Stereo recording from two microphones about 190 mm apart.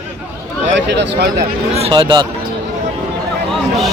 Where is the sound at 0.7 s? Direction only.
65° right (ahead or behind).